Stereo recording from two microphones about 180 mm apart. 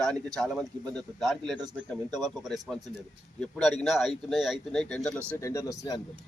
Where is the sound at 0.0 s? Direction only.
5° left (ahead or behind).